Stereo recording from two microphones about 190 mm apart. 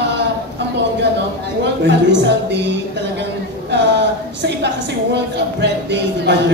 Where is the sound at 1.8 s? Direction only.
65° right (ahead or behind).